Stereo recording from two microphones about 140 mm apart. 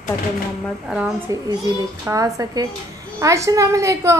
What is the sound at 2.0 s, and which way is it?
A child's voice, 25° right (ahead or behind).